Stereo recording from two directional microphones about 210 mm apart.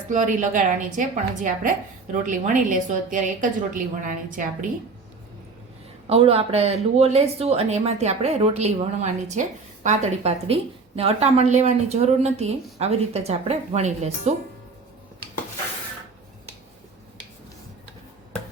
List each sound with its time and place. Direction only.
0.1 s a woman's voice: 35° right (ahead or behind)
6.1 s a woman's voice: 30° right (ahead or behind)